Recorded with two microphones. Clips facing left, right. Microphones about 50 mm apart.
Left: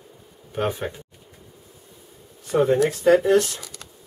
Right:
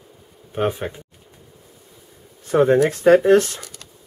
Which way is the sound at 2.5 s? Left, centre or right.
Right.